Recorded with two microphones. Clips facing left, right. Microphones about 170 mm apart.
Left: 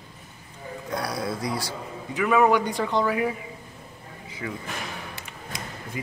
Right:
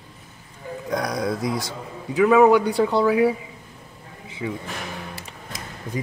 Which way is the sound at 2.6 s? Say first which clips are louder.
Right 5 dB; 35° right (ahead or behind).